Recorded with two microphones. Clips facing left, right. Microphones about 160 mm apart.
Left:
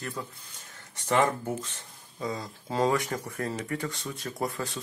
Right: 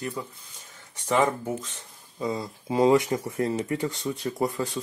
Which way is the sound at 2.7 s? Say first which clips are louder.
Right 6 dB; 15° right (ahead or behind).